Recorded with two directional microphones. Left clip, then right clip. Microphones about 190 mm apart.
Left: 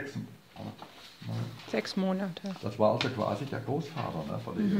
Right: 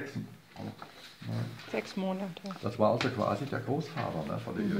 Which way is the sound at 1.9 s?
35° left (ahead or behind).